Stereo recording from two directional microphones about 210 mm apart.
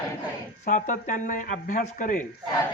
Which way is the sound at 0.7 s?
35° left (ahead or behind).